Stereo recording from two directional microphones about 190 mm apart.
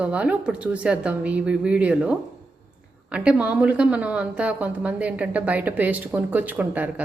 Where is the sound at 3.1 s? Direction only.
5° right (ahead or behind).